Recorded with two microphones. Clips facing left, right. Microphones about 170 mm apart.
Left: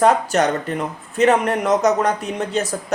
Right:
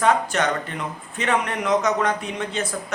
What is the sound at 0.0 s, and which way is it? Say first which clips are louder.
Speech: left 4 dB; 40° left (ahead or behind).